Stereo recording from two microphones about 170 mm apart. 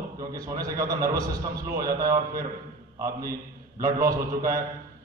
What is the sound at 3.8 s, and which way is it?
Speech, 20° right (ahead or behind).